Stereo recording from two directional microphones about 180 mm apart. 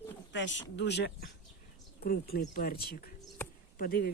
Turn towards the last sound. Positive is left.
turn(degrees=55)  # may be behind; listen again after turning